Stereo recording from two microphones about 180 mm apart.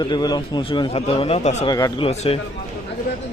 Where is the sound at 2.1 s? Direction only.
35° left (ahead or behind).